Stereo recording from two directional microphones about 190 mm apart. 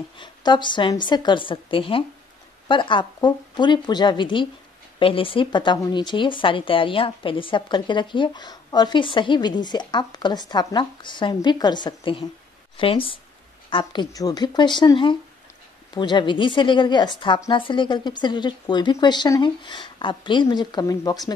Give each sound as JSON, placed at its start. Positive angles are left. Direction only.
{"t": 0.2, "sound": "speech", "side_deg": 25}